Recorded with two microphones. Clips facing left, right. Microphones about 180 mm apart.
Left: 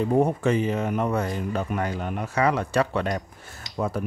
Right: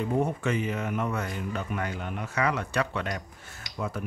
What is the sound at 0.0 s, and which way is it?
Speech, 35° left (ahead or behind).